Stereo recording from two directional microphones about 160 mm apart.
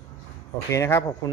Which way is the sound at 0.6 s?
15° left (ahead or behind).